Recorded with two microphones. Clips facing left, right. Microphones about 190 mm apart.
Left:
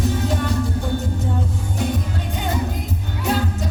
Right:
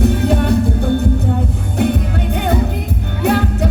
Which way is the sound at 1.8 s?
60° right (ahead or behind).